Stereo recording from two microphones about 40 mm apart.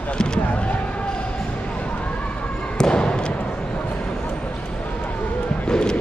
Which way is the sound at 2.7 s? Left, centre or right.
Centre.